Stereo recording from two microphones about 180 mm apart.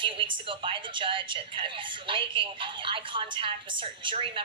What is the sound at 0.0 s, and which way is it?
A woman's voice, 30° right (ahead or behind).